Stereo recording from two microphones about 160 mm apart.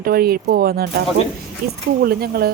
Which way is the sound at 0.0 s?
70° right (ahead or behind).